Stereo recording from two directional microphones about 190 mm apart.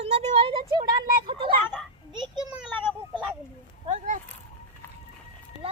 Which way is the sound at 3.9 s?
40° right (ahead or behind).